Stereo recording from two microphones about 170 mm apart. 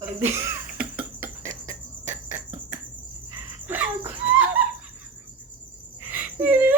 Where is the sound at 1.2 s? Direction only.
50° right (ahead or behind).